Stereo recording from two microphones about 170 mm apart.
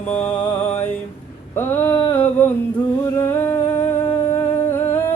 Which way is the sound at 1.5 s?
10° left (ahead or behind).